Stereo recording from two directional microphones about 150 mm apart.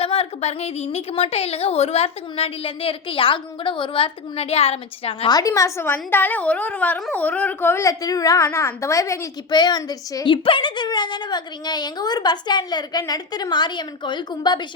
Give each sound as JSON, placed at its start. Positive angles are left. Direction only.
{"t": 0.0, "sound": "a woman's voice", "side_deg": 40}
{"t": 5.3, "sound": "a woman's voice", "side_deg": 25}